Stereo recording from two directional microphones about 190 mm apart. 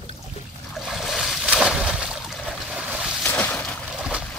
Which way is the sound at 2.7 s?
5° right (ahead or behind).